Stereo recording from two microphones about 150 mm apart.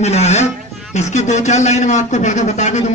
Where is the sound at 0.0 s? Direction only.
45° left (ahead or behind).